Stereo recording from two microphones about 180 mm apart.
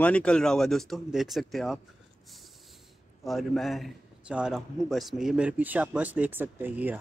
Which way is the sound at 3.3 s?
Centre (ahead or behind).